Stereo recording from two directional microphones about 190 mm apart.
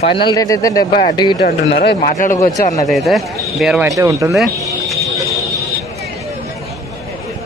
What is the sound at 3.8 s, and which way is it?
Speech, 15° right (ahead or behind).